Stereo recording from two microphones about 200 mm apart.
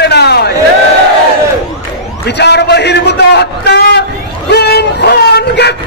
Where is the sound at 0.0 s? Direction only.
55° left (ahead or behind).